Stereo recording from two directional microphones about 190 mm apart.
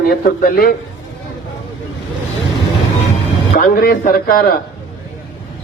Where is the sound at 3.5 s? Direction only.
45° left (ahead or behind).